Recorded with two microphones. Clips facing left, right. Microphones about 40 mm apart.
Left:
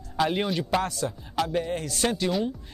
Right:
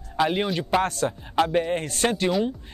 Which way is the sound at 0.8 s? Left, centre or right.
Right.